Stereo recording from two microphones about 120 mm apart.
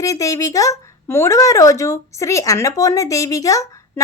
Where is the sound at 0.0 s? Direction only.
25° left (ahead or behind).